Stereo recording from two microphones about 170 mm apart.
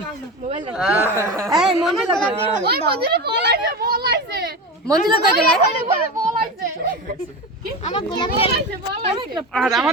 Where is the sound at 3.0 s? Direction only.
70° right (ahead or behind).